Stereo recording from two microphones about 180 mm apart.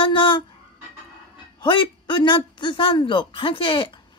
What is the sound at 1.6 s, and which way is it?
Speech, 25° left (ahead or behind).